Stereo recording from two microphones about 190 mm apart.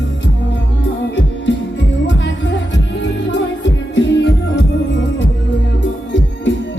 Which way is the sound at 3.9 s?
70° left (ahead or behind).